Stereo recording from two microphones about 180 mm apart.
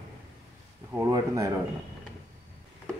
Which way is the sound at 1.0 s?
20° right (ahead or behind).